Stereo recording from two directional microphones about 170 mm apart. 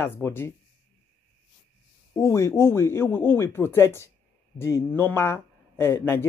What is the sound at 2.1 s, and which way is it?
Speech, 15° left (ahead or behind).